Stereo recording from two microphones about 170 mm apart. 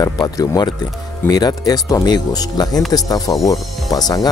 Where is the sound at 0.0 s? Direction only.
20° left (ahead or behind).